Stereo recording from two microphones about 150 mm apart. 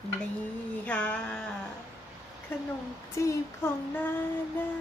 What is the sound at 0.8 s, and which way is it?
Speech, 10° left (ahead or behind).